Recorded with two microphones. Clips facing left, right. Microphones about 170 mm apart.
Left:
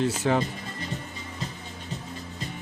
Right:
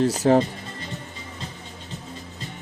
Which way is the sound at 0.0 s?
40° right (ahead or behind).